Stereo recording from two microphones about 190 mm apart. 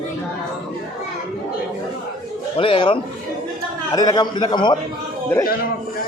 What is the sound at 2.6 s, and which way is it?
Speech, 25° left (ahead or behind).